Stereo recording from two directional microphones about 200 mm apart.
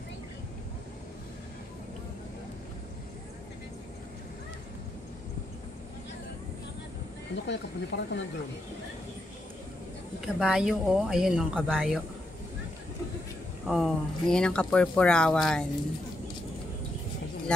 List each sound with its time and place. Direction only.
7.4 s speech: 60° left (ahead or behind)
10.2 s speech: 5° right (ahead or behind)
13.7 s speech: centre (ahead or behind)
17.5 s speech: 5° left (ahead or behind)